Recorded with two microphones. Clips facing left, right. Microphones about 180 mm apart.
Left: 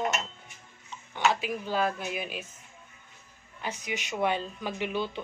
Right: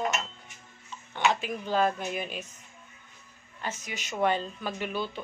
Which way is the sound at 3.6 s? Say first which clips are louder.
Left 2 dB; 15° left (ahead or behind).